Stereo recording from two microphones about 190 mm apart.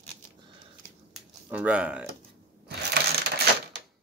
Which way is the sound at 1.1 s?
5° right (ahead or behind).